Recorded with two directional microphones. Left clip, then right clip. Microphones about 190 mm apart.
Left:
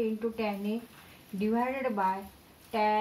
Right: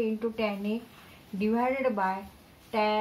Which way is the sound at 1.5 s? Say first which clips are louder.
Right 3 dB; 15° left (ahead or behind).